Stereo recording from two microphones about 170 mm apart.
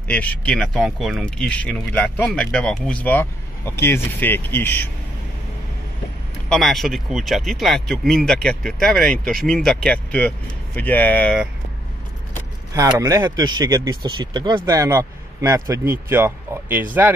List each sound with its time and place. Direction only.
0.1 s speech: 10° left (ahead or behind)
6.5 s speech: centre (ahead or behind)
12.7 s speech: 20° right (ahead or behind)